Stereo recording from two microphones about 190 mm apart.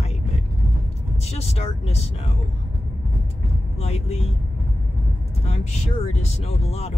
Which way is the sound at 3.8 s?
35° left (ahead or behind).